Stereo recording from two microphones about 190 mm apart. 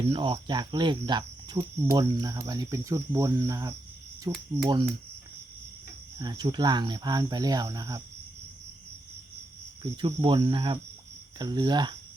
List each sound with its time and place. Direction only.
0.1 s cricket: 25° right (ahead or behind)
4.2 s speech: 20° right (ahead or behind)
6.1 s cricket: 20° right (ahead or behind)
10.0 s cricket: 25° right (ahead or behind)